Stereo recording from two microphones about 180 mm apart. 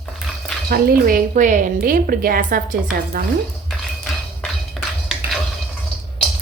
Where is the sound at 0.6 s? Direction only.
55° right (ahead or behind).